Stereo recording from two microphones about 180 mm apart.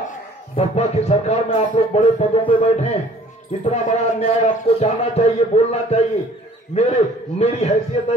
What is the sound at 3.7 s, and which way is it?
A man's voice, 35° left (ahead or behind).